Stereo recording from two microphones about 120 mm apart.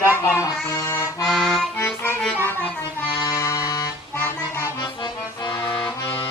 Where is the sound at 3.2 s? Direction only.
30° left (ahead or behind).